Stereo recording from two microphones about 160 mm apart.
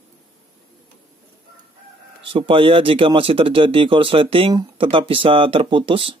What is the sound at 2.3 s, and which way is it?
Speech, 35° right (ahead or behind).